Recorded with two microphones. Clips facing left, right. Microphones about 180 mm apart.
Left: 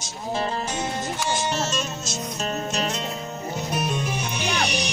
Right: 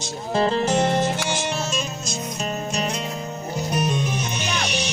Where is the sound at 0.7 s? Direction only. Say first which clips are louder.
Right 8 dB; 80° right.